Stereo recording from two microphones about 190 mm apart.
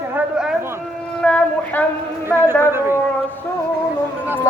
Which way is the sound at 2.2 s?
10° right (ahead or behind).